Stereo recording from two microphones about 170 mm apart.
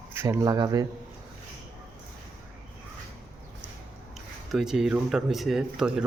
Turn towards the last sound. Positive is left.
turn(degrees=-5)  # may be behind; listen again after turning